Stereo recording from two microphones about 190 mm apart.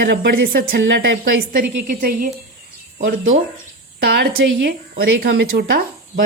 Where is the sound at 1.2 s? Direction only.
50° right (ahead or behind).